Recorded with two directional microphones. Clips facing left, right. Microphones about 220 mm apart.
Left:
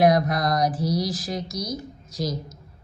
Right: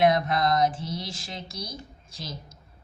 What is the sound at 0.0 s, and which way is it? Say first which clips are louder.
A woman's voice: left 3 dB; 25° right (ahead or behind).